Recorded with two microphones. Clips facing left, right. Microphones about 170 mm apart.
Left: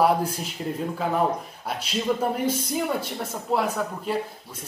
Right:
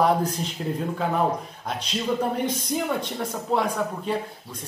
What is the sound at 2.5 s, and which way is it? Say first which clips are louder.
Speech: left 1 dB; 5° left (ahead or behind).